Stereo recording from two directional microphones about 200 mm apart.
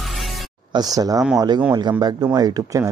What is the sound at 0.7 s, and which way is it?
Speech, 20° right (ahead or behind).